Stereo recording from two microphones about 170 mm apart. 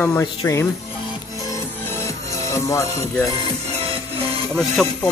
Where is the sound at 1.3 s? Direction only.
20° left (ahead or behind).